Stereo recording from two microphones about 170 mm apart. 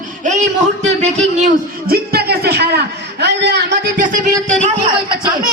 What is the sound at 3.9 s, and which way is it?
Speech, 50° right (ahead or behind).